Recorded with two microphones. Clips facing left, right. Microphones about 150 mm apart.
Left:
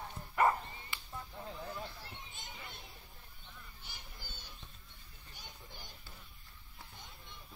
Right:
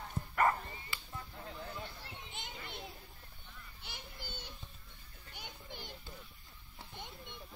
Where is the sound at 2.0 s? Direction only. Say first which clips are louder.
Right 2 dB; 65° right (ahead or behind).